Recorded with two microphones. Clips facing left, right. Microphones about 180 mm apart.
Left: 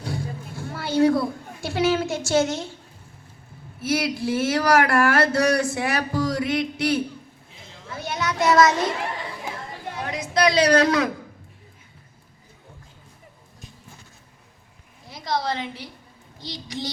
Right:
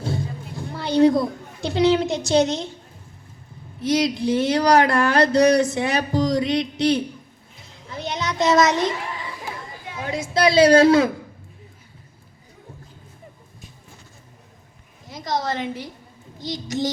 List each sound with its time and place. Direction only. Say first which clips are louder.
0.0 s a sound: right 3 dB; 20° right (ahead or behind)
3.8 s speech: right 4 dB; 20° right (ahead or behind)
7.9 s child singing: right 1 dB; 20° right (ahead or behind)
10.1 s speech: right 2 dB; 30° right (ahead or behind)
15.1 s a woman's voice: right 1 dB; 45° right (ahead or behind)